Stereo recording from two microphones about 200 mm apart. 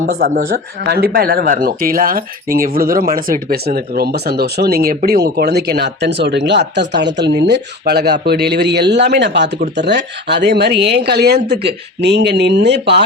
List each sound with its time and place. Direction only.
0.0 s speech: 45° right (ahead or behind)